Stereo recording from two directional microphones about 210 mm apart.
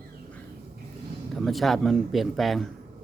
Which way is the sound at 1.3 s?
Centre (ahead or behind).